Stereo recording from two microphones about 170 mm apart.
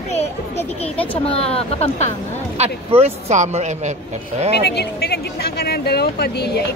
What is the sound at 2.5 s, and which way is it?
Speech, 35° right (ahead or behind).